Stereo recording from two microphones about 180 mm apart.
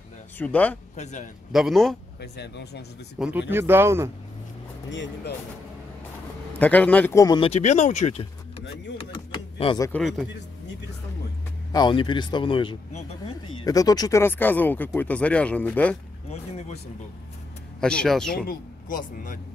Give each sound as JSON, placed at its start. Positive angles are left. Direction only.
{"t": 0.4, "sound": "speech", "side_deg": 10}
{"t": 0.9, "sound": "a man's voice", "side_deg": 40}
{"t": 1.5, "sound": "speech", "side_deg": 0}
{"t": 2.1, "sound": "speech", "side_deg": 65}
{"t": 3.2, "sound": "speech", "side_deg": -5}
{"t": 4.8, "sound": "speech", "side_deg": 80}
{"t": 6.6, "sound": "speech", "side_deg": 10}
{"t": 7.3, "sound": "speech", "side_deg": 35}
{"t": 8.9, "sound": "a sound", "side_deg": 30}
{"t": 11.7, "sound": "speech", "side_deg": 25}
{"t": 16.3, "sound": "a sound", "side_deg": 35}
{"t": 17.7, "sound": "speech", "side_deg": 5}
{"t": 18.3, "sound": "speech", "side_deg": 55}